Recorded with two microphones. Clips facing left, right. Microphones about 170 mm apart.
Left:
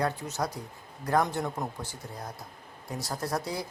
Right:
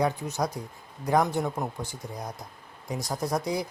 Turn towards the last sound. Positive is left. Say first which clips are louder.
# right 4 dB
turn(degrees=-15)  # may be behind; listen again after turning